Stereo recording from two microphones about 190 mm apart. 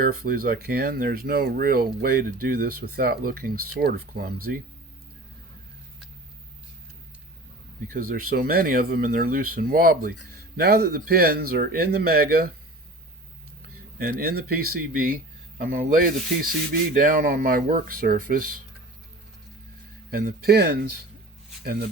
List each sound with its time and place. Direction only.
0.0 s speech: 50° right (ahead or behind)
7.9 s speech: 50° right (ahead or behind)
14.0 s speech: 55° right (ahead or behind)
20.1 s speech: 50° right (ahead or behind)